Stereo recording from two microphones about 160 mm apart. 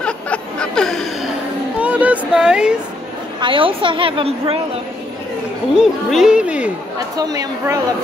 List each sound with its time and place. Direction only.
0.0 s music: 5° left (ahead or behind)
1.8 s a sound: 10° right (ahead or behind)
3.3 s a woman's voice: 30° right (ahead or behind)
5.8 s speech: 5° right (ahead or behind)
7.2 s a woman's voice: 25° right (ahead or behind)